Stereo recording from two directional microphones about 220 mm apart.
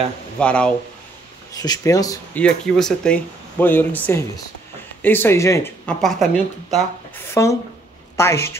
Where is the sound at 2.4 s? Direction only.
5° left (ahead or behind).